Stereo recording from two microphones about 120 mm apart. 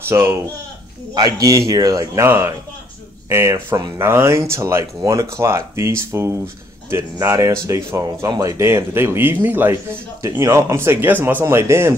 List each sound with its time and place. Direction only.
0.1 s speech: 20° right (ahead or behind)